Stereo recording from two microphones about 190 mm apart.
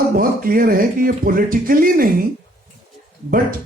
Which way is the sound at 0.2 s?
50° right (ahead or behind).